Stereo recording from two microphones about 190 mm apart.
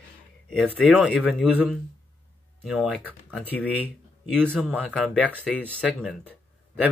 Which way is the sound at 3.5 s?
10° left (ahead or behind).